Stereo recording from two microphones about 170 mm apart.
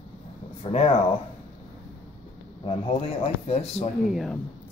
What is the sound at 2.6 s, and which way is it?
A man's voice, 35° left (ahead or behind).